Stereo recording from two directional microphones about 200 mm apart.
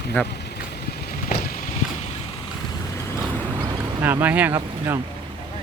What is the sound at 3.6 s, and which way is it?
Vehicle, 10° right (ahead or behind).